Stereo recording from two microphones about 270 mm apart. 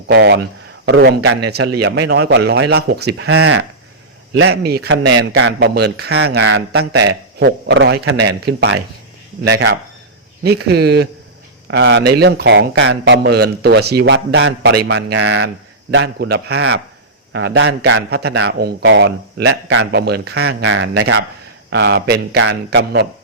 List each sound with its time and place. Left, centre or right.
0.1 s a man's voice: right